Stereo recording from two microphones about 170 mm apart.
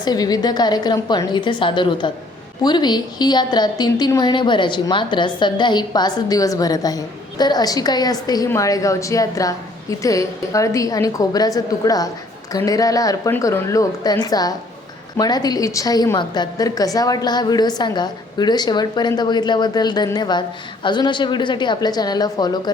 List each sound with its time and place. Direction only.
0.0 s a woman's voice: 25° left (ahead or behind)